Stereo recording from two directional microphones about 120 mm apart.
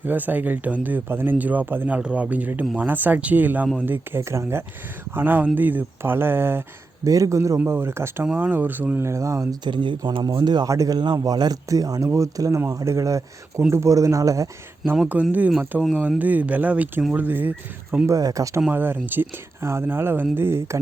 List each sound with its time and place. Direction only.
0.0 s speech: 15° right (ahead or behind)
9.6 s speech: 40° right (ahead or behind)
15.1 s speech: 15° right (ahead or behind)
18.0 s speech: 30° right (ahead or behind)
18.7 s speech: 15° right (ahead or behind)